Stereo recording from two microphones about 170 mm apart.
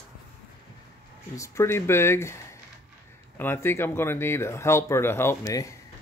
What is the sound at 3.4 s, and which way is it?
Speech, 15° left (ahead or behind).